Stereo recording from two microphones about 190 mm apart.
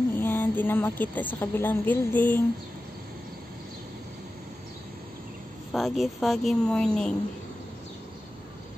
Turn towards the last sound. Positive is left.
turn(degrees=5)  # may be behind; listen again after turning